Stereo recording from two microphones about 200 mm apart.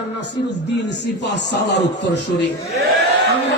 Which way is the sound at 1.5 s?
60° left (ahead or behind).